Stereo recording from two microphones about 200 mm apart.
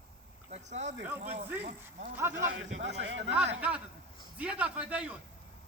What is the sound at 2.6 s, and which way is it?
Speech, 70° right (ahead or behind).